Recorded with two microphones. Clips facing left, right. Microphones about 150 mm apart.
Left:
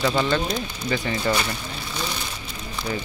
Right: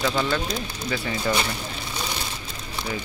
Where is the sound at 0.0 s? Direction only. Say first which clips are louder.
Left 2 dB; 5° left (ahead or behind).